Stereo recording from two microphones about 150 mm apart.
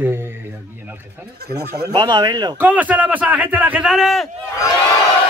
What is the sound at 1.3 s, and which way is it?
Speech, 90° right.